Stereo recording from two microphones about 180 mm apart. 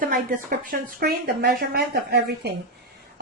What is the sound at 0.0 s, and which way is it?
A woman's voice, 50° right (ahead or behind).